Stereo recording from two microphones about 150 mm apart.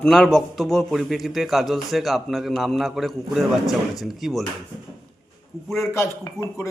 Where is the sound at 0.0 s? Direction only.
5° left (ahead or behind).